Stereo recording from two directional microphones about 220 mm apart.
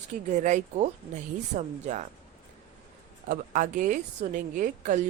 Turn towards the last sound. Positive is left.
turn(degrees=-35)  # may be behind; listen again after turning